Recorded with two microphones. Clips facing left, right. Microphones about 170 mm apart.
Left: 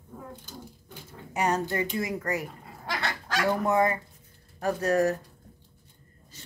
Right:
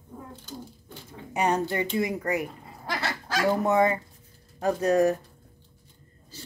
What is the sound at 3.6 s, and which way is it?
Speech, 20° right (ahead or behind).